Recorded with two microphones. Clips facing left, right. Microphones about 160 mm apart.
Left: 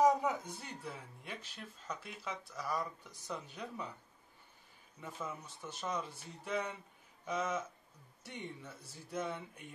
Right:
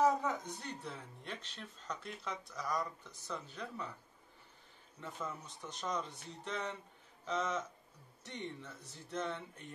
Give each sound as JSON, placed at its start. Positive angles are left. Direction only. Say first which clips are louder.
{"t": 0.0, "sound": "speech", "louder": "left 2 dB", "side_deg": 10}
{"t": 5.0, "sound": "speech", "louder": "even", "side_deg": 5}